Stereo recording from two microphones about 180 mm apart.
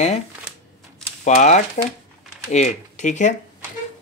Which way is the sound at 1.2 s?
40° left (ahead or behind).